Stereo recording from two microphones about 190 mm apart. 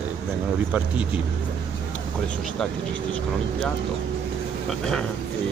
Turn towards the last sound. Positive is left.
turn(degrees=5)  # may be behind; listen again after turning